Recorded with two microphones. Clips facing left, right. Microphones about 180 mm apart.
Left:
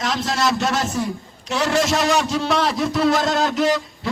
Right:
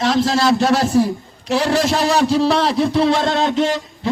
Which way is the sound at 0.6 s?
35° right (ahead or behind).